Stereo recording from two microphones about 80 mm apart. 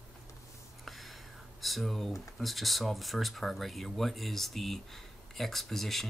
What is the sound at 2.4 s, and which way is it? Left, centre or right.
Speech, centre.